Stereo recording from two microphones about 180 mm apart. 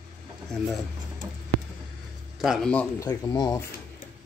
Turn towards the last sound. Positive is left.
turn(degrees=20)  # may be behind; listen again after turning